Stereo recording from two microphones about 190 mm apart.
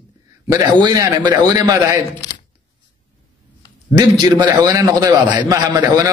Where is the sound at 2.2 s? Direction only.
20° left (ahead or behind).